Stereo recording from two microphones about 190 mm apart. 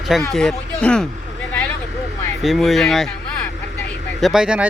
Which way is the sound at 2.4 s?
Centre (ahead or behind).